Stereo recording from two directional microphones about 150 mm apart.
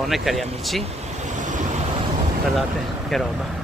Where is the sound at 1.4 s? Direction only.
55° right (ahead or behind).